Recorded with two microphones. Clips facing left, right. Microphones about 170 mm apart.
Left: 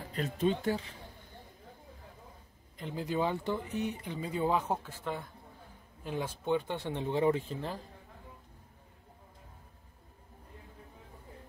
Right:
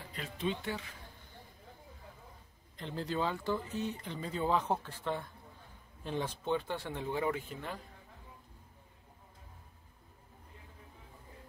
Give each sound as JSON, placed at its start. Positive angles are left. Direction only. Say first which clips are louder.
{"t": 0.1, "sound": "speech", "louder": "left 6 dB", "side_deg": 45}
{"t": 2.8, "sound": "speech", "louder": "left 3 dB", "side_deg": 10}